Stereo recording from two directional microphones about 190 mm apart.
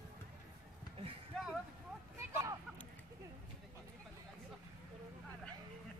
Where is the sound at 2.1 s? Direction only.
15° right (ahead or behind).